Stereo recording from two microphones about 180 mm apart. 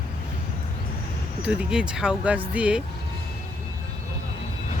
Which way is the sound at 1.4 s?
5° right (ahead or behind).